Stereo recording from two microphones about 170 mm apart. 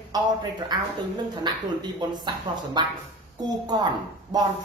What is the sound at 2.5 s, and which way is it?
Speech, 25° right (ahead or behind).